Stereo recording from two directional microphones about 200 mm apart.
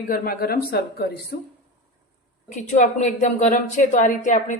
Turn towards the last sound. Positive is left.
turn(degrees=40)  # may be behind; listen again after turning